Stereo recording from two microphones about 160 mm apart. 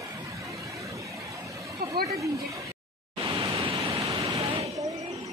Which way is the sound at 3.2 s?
30° right (ahead or behind).